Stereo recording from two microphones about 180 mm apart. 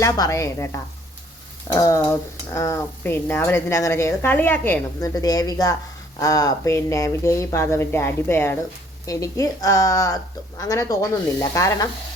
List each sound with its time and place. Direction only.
0.0 s a woman's voice: 15° left (ahead or behind)